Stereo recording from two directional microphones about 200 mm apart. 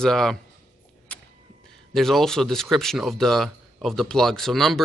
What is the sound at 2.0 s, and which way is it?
Speech, centre (ahead or behind).